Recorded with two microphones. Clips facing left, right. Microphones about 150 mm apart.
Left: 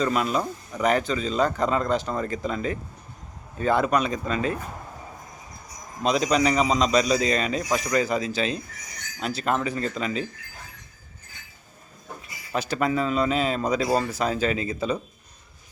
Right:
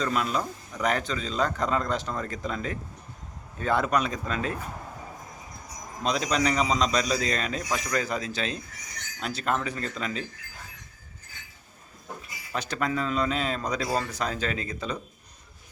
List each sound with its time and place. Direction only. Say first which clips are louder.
0.0 s a man's voice: left 4 dB; 5° left (ahead or behind)
6.0 s a man's voice: left 4 dB; 5° left (ahead or behind)
12.5 s a man's voice: left 4 dB; 5° left (ahead or behind)